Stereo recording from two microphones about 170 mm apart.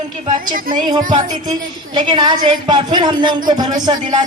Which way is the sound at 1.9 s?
30° right (ahead or behind).